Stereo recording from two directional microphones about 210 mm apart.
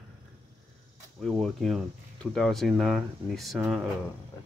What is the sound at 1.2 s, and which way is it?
Speech, centre (ahead or behind).